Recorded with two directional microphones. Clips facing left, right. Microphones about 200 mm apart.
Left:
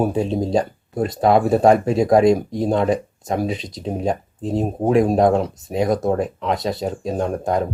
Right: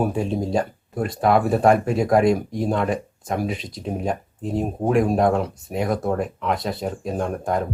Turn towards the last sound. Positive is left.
turn(degrees=35)  # may be behind; listen again after turning